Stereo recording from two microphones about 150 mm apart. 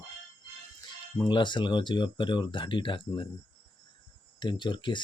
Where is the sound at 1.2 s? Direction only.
30° left (ahead or behind).